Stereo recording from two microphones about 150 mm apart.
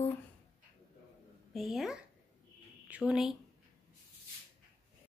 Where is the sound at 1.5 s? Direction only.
Centre (ahead or behind).